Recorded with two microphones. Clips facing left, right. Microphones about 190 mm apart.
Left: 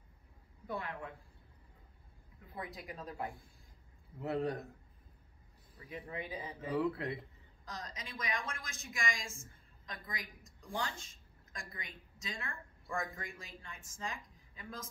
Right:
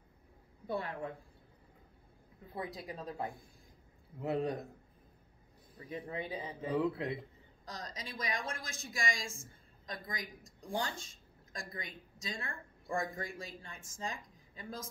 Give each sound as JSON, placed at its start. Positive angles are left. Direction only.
{"t": 0.7, "sound": "a woman's voice", "side_deg": -35}
{"t": 2.5, "sound": "a woman's voice", "side_deg": -30}
{"t": 4.2, "sound": "a man's voice", "side_deg": -15}
{"t": 5.9, "sound": "speech", "side_deg": -30}
{"t": 7.6, "sound": "a woman's voice", "side_deg": -35}